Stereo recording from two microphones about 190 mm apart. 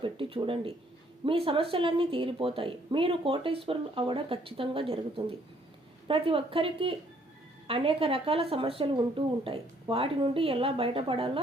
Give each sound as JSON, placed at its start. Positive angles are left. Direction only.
{"t": 0.0, "sound": "speech", "side_deg": -25}